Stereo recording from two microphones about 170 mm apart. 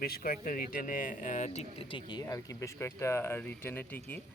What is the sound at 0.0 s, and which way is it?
Speech, 60° left (ahead or behind).